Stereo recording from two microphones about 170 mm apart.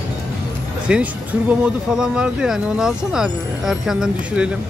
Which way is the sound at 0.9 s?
10° right (ahead or behind).